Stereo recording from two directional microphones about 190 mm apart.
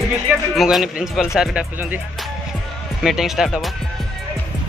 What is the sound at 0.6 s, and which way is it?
A man's voice, centre (ahead or behind).